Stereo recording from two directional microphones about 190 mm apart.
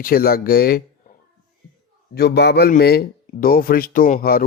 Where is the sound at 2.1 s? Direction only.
60° left (ahead or behind).